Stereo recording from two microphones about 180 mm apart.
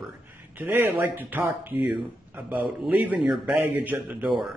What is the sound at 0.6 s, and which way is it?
Speech, 10° right (ahead or behind).